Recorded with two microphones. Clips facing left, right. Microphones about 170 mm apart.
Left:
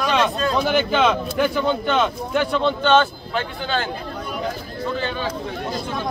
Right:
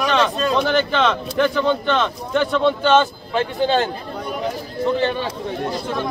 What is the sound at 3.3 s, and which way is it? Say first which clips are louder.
Speech: right 7 dB; 35° right (ahead or behind).